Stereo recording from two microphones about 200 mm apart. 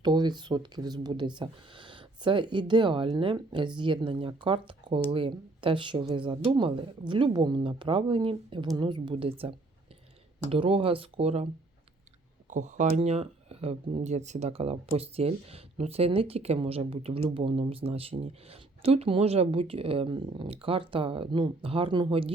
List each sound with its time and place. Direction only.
0.0 s speech: 20° right (ahead or behind)
12.5 s speech: 40° right (ahead or behind)